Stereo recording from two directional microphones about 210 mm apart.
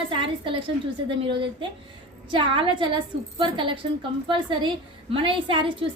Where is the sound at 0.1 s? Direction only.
25° right (ahead or behind).